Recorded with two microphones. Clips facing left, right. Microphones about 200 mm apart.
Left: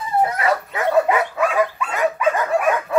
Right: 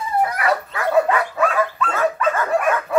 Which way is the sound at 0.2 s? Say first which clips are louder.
Left 1 dB; 25° left (ahead or behind).